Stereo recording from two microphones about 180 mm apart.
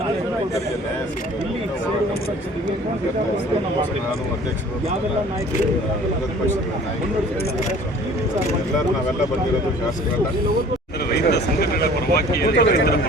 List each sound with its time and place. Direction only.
11.1 s speech: 65° left (ahead or behind)